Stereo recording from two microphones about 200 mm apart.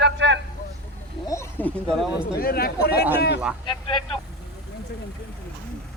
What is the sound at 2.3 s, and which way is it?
Speech, 50° left (ahead or behind).